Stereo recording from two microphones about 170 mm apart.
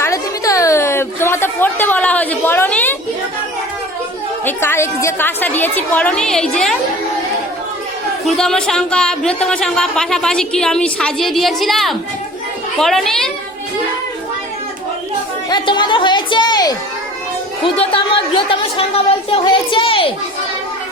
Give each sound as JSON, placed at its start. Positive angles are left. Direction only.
{"t": 0.0, "sound": "a sound", "side_deg": 20}
{"t": 4.4, "sound": "a woman's voice", "side_deg": 15}
{"t": 8.3, "sound": "speech", "side_deg": 5}
{"t": 15.4, "sound": "a woman's voice", "side_deg": 25}